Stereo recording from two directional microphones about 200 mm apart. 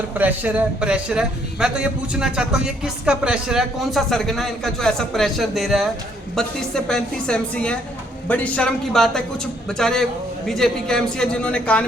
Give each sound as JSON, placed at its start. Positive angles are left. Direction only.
{"t": 0.1, "sound": "speech", "side_deg": -10}